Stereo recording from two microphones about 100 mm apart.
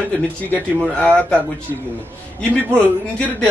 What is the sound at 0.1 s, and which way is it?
A man's voice, 10° left (ahead or behind).